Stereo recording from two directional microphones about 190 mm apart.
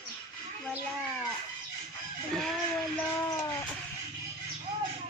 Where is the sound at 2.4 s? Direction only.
5° left (ahead or behind).